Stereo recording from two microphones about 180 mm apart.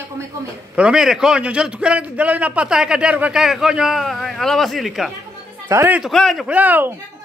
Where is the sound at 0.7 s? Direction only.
5° right (ahead or behind).